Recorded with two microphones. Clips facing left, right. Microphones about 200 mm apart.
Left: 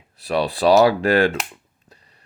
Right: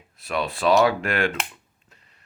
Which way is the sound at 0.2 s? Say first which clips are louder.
Left 5 dB; 35° left (ahead or behind).